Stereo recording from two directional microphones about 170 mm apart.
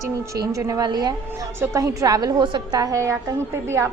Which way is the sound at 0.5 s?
20° right (ahead or behind).